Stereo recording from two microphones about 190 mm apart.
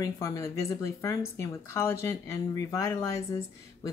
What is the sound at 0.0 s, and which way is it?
Speech, 15° left (ahead or behind).